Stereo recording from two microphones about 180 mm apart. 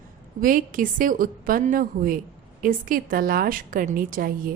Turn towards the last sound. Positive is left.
turn(degrees=-50)  # may be behind; listen again after turning